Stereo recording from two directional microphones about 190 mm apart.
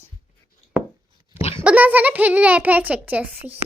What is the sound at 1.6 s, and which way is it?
A child's voice, 10° right (ahead or behind).